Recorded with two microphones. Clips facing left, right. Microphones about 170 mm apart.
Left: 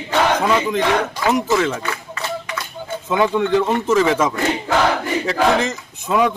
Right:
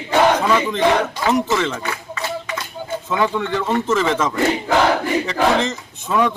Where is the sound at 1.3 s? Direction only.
10° left (ahead or behind).